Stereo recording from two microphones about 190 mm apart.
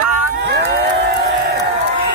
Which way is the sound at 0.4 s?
60° right (ahead or behind).